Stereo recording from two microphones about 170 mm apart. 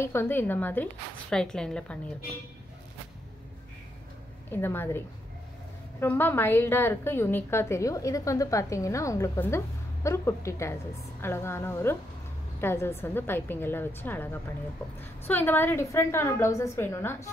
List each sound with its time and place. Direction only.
0.0 s a woman's voice: 15° left (ahead or behind)
4.5 s a woman's voice: 15° left (ahead or behind)